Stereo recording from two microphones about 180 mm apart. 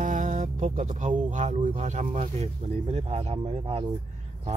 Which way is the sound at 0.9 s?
40° right (ahead or behind).